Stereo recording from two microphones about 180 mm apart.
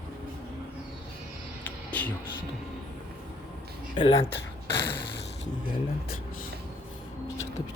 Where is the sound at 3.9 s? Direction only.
30° left (ahead or behind).